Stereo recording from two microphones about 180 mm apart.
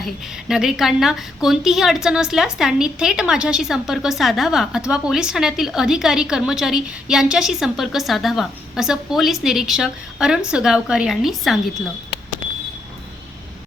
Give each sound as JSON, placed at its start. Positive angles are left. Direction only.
{"t": 0.0, "sound": "a woman's voice", "side_deg": 0}